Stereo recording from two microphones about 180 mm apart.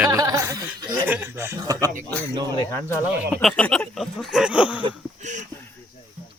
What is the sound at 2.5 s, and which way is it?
Speech, 20° left (ahead or behind).